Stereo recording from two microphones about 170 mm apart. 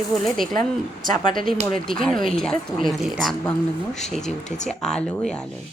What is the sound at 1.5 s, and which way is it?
Speech, 50° right (ahead or behind).